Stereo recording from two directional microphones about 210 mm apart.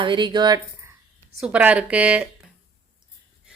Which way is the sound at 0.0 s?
25° right (ahead or behind).